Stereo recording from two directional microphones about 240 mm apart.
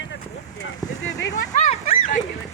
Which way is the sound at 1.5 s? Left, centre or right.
Left.